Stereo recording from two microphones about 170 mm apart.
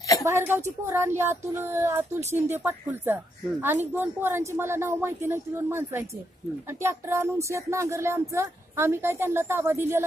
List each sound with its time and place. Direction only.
0.2 s a woman's voice: 15° right (ahead or behind)